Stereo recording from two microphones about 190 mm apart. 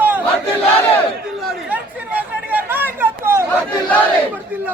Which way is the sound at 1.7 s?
10° right (ahead or behind).